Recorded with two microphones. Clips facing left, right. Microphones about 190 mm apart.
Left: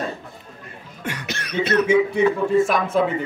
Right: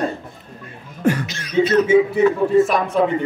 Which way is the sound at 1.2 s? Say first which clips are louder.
Right 6 dB; 60° left (ahead or behind).